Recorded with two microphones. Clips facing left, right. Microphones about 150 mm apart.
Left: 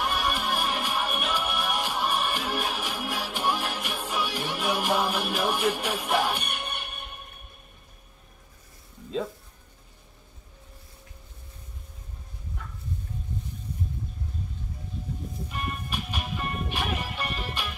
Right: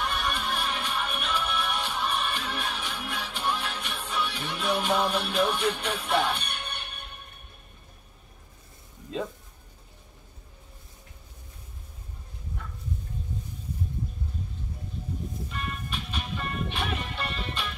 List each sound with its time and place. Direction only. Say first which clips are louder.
0.0 s music: left 2 dB; 10° left (ahead or behind)
15.5 s music: left 4 dB; 10° left (ahead or behind)